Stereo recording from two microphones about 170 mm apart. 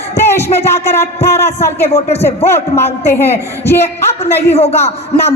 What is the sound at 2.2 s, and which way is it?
Speech, 15° left (ahead or behind).